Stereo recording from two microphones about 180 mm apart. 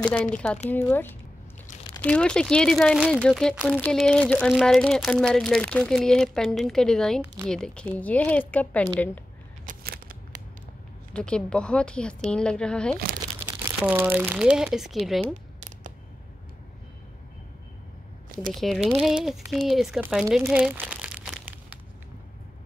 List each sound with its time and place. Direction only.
0.0 s speech: 5° left (ahead or behind)
9.7 s a sound: 50° right (ahead or behind)
11.1 s speech: 5° left (ahead or behind)
13.7 s speech: 10° right (ahead or behind)
18.5 s speech: centre (ahead or behind)
20.0 s crumpling: 5° right (ahead or behind)